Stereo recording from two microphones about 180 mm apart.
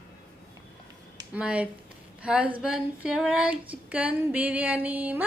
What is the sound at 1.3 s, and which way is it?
A woman's voice, 5° right (ahead or behind).